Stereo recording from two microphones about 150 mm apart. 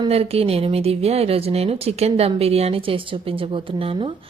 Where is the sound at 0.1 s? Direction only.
40° right (ahead or behind).